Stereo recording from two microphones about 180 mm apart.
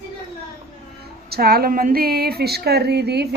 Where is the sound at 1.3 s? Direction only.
55° right (ahead or behind).